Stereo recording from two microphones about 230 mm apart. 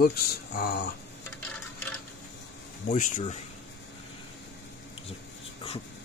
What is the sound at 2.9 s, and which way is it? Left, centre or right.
Speech, left.